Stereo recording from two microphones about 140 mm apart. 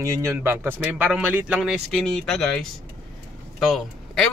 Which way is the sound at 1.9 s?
5° left (ahead or behind).